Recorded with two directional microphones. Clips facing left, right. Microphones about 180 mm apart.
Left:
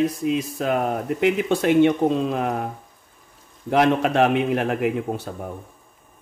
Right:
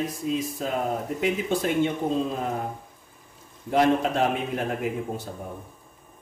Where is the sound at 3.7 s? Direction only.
70° left (ahead or behind).